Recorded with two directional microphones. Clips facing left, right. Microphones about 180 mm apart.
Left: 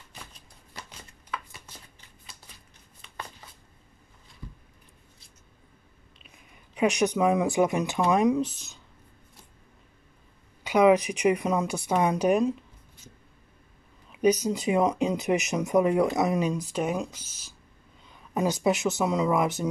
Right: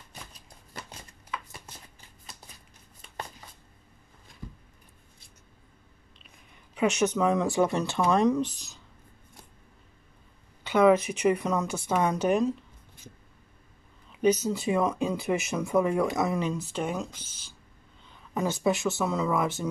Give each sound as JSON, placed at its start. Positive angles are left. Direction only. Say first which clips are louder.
{"t": 6.7, "sound": "speech", "louder": "left 1 dB", "side_deg": 15}
{"t": 10.6, "sound": "speech", "louder": "left 1 dB", "side_deg": 10}
{"t": 14.2, "sound": "speech", "louder": "left 1 dB", "side_deg": 15}
{"t": 18.3, "sound": "speech", "louder": "left 2 dB", "side_deg": 20}